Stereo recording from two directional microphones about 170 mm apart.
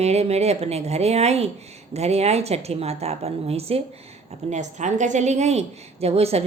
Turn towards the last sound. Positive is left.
turn(degrees=-35)  # may be behind; listen again after turning